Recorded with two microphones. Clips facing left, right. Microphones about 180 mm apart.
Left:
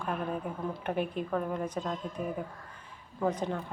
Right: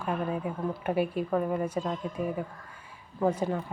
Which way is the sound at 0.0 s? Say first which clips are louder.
Right 3 dB; 5° right (ahead or behind).